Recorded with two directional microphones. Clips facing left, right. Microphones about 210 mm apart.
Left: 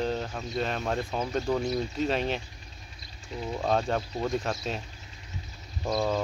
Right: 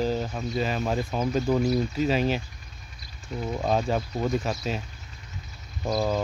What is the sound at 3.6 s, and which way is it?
Speech, 5° right (ahead or behind).